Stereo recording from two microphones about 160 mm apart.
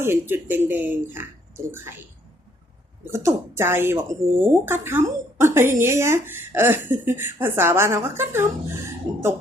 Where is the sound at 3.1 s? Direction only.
15° right (ahead or behind).